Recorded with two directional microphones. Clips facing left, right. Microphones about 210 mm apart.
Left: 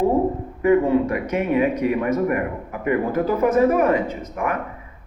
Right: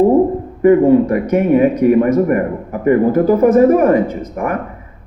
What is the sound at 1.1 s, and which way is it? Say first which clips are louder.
Speech: right 8 dB; 45° right (ahead or behind).